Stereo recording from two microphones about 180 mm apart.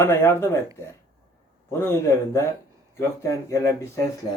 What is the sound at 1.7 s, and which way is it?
Speech, 15° left (ahead or behind).